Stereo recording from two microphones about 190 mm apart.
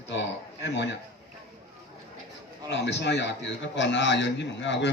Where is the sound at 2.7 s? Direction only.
65° left (ahead or behind).